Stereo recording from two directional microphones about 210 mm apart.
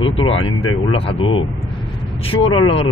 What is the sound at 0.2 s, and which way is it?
Speech, 25° left (ahead or behind).